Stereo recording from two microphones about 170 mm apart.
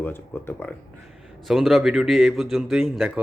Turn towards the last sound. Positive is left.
turn(degrees=-5)  # may be behind; listen again after turning